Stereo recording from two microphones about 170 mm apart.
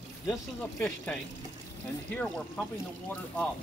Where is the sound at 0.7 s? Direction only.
10° left (ahead or behind).